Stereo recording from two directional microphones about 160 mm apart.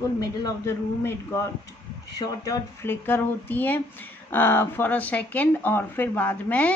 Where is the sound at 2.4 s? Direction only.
15° left (ahead or behind).